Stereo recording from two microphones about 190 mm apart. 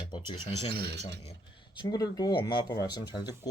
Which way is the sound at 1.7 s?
20° left (ahead or behind).